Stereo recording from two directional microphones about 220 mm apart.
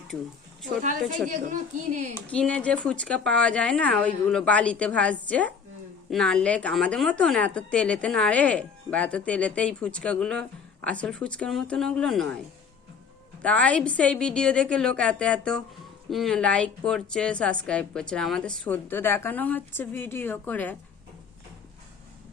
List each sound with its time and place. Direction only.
0.8 s speech: 35° right (ahead or behind)
2.2 s a woman's voice: 5° left (ahead or behind)
13.4 s a woman's voice: 5° left (ahead or behind)